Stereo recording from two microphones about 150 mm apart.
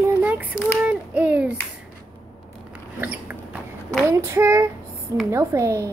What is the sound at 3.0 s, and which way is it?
Rodents, 10° right (ahead or behind).